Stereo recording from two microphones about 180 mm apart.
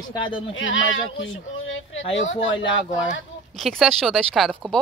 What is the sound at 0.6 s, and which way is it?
Speech, 90° left.